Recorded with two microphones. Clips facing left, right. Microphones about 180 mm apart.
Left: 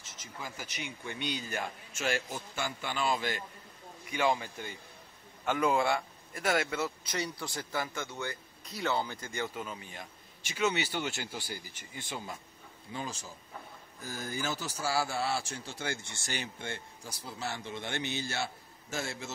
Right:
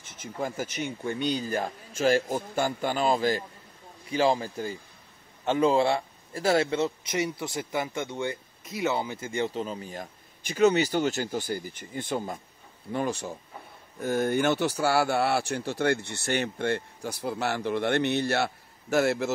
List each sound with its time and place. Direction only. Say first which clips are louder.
0.0 s speech: right 11 dB; 55° right (ahead or behind)
12.9 s speech: right 11 dB; 65° right (ahead or behind)